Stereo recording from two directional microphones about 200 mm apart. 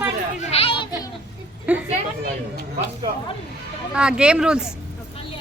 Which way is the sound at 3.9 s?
5° right (ahead or behind).